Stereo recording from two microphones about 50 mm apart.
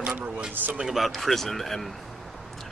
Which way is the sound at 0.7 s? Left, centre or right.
Centre.